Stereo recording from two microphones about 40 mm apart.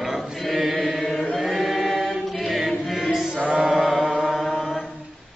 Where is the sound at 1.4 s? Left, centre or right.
Centre.